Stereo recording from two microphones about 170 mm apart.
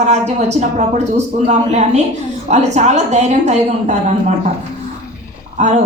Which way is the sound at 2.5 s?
40° right (ahead or behind).